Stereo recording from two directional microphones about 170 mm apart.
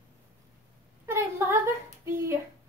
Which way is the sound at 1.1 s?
15° right (ahead or behind).